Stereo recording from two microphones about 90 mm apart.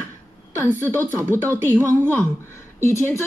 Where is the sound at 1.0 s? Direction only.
25° right (ahead or behind).